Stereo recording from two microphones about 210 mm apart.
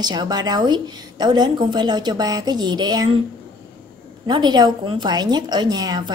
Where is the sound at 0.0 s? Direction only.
20° right (ahead or behind).